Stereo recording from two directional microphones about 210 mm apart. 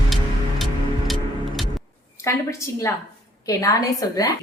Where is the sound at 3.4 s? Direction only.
15° left (ahead or behind).